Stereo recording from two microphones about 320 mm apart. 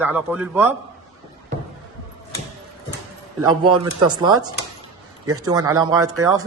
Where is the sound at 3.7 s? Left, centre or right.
Centre.